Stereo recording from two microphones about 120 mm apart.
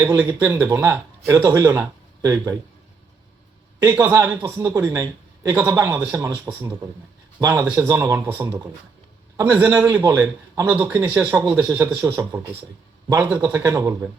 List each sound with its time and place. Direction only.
0.0 s a man's voice: 25° right (ahead or behind)
3.8 s a man's voice: 20° right (ahead or behind)